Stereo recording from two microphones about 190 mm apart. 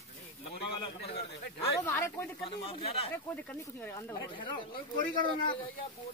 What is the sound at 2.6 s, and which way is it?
Speech, 30° left (ahead or behind).